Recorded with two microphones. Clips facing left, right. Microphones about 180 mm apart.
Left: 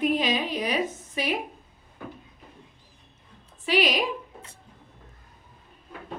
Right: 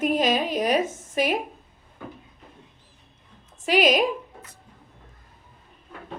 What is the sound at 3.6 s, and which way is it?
Speech, 45° right (ahead or behind).